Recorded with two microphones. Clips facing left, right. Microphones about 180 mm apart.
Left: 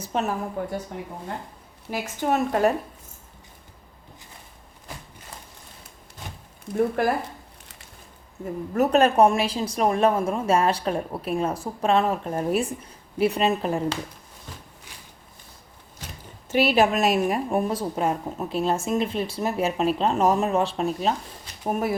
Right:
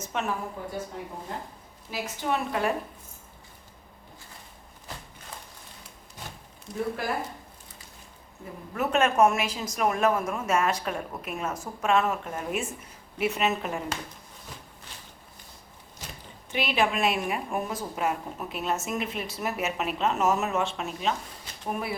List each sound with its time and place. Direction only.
0.0 s a woman's voice: 35° left (ahead or behind)
0.6 s a woman's voice: 60° left (ahead or behind)
1.9 s a woman's voice: 45° left (ahead or behind)
6.7 s a woman's voice: 55° left (ahead or behind)
8.7 s a woman's voice: 40° left (ahead or behind)
16.5 s a woman's voice: 40° left (ahead or behind)